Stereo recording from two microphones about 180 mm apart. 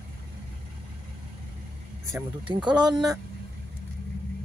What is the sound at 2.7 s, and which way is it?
Speech, 25° right (ahead or behind).